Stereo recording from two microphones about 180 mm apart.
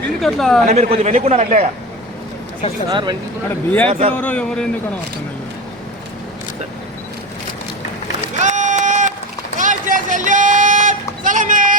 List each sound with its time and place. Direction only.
0.2 s speech: centre (ahead or behind)
0.6 s a man's voice: 35° right (ahead or behind)
2.9 s speech: 25° right (ahead or behind)
3.5 s speech: 10° left (ahead or behind)
3.8 s a man's voice: 35° right (ahead or behind)
4.1 s speech: 10° left (ahead or behind)
8.4 s run: 40° right (ahead or behind)